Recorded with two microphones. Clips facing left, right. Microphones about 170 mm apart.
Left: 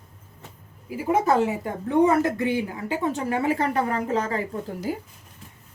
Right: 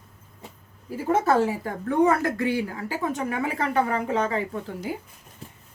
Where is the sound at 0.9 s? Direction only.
15° left (ahead or behind); by 4.4 s 40° left (ahead or behind).